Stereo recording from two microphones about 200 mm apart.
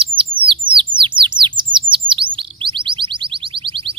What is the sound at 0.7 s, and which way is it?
Bird, 25° right (ahead or behind).